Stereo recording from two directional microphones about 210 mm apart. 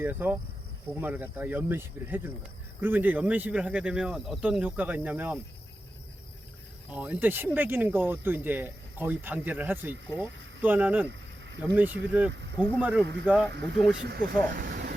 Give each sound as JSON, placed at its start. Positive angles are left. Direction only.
{"t": 0.0, "sound": "speech", "side_deg": -10}
{"t": 6.9, "sound": "speech", "side_deg": -5}
{"t": 12.3, "sound": "speech", "side_deg": -55}
{"t": 12.7, "sound": "speech", "side_deg": -5}
{"t": 13.5, "sound": "speech", "side_deg": -55}